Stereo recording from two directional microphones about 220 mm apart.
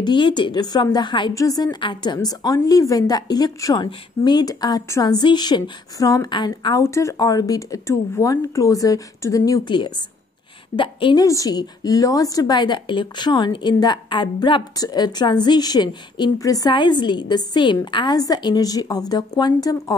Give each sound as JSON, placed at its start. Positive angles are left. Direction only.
{"t": 0.0, "sound": "a woman's voice", "side_deg": 20}